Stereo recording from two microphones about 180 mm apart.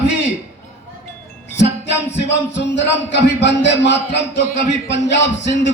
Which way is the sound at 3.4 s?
75° left (ahead or behind).